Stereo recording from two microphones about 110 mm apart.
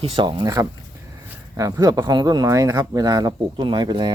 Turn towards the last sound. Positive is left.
turn(degrees=-40)  # may be behind; listen again after turning